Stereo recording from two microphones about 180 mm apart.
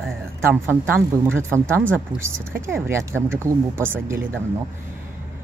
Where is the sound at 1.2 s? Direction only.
15° right (ahead or behind).